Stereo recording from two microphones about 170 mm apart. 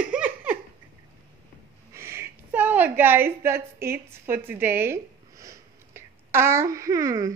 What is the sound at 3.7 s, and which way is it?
Speech, 15° right (ahead or behind).